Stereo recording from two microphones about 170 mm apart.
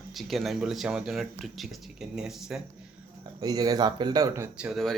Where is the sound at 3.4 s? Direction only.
20° right (ahead or behind).